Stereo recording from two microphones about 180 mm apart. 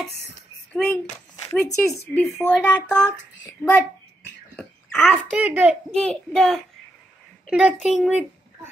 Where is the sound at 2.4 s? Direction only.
5° left (ahead or behind).